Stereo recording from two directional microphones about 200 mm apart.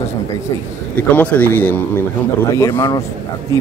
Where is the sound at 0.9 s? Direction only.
10° left (ahead or behind).